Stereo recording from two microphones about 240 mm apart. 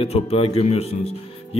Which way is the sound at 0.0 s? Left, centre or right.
Left.